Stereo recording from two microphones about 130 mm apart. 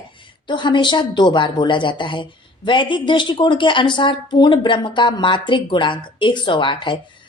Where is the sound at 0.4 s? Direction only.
35° left (ahead or behind).